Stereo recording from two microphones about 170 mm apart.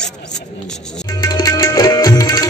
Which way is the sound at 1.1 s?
20° left (ahead or behind).